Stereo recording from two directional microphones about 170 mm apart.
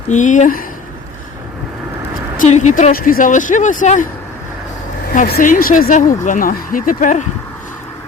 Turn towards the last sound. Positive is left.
turn(degrees=45)  # may be behind; listen again after turning